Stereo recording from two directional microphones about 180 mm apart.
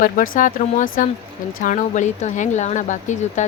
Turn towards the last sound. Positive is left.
turn(degrees=40)  # may be behind; listen again after turning